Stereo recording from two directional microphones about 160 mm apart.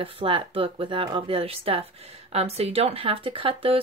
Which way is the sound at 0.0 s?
35° right (ahead or behind).